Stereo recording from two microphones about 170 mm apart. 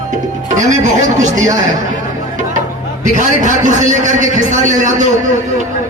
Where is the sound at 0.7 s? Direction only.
45° right (ahead or behind).